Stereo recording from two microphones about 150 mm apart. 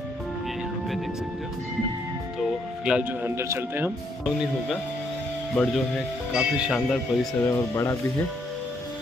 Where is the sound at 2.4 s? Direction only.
5° right (ahead or behind).